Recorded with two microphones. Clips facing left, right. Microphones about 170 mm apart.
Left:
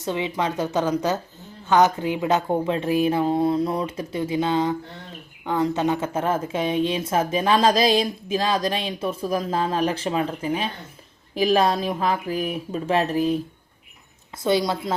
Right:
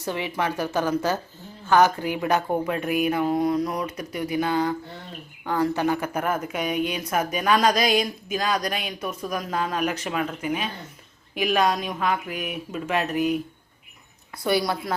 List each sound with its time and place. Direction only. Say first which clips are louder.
0.0 s speech: left 2 dB; 20° left (ahead or behind)
14.4 s speech: left 2 dB; 20° left (ahead or behind)